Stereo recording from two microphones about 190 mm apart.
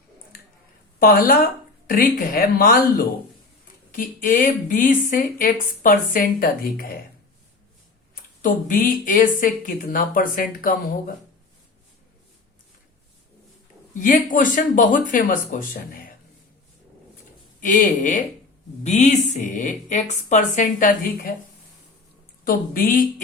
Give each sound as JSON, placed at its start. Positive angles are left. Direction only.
{"t": 0.9, "sound": "speech", "side_deg": 50}
{"t": 8.1, "sound": "speech", "side_deg": 45}
{"t": 14.0, "sound": "speech", "side_deg": 45}
{"t": 17.6, "sound": "a woman's voice", "side_deg": 45}
{"t": 22.4, "sound": "speech", "side_deg": 50}